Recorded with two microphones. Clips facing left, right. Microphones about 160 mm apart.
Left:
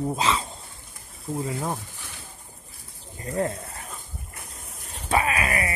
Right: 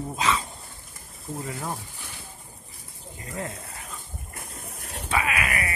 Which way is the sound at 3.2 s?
40° left (ahead or behind).